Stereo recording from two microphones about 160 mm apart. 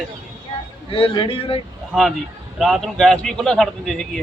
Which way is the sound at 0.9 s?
35° left (ahead or behind).